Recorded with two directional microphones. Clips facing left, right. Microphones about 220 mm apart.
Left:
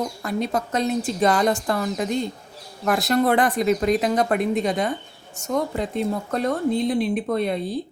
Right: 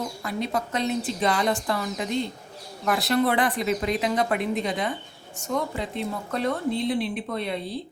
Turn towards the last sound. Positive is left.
turn(degrees=45)  # may be behind; listen again after turning